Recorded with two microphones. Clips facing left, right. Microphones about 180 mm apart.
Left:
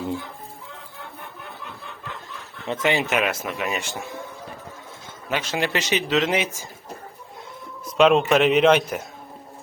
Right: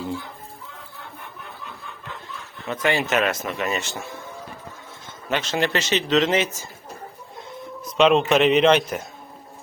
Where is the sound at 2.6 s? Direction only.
25° left (ahead or behind).